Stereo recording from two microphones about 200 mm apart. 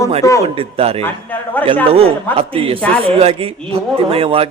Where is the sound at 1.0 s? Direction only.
10° left (ahead or behind).